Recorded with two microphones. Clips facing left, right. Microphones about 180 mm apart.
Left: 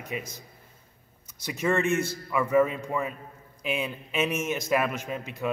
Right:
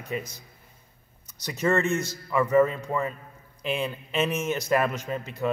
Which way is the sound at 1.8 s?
35° right (ahead or behind).